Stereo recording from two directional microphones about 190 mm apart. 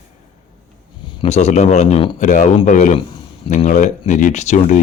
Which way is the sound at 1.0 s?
25° left (ahead or behind).